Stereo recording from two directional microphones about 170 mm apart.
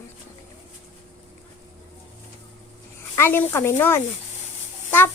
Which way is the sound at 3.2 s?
15° left (ahead or behind).